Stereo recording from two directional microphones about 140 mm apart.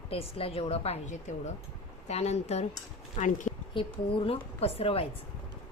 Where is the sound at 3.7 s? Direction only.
40° left (ahead or behind).